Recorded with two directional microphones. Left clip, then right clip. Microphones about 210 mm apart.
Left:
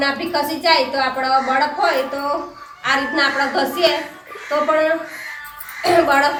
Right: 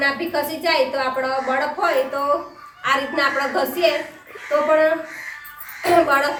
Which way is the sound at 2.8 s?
15° right (ahead or behind).